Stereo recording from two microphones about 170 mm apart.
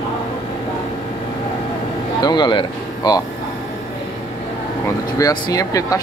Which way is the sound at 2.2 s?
25° left (ahead or behind).